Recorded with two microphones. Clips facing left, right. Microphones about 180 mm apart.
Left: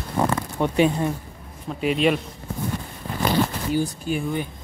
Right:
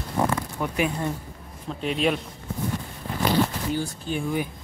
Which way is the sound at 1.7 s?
5° left (ahead or behind).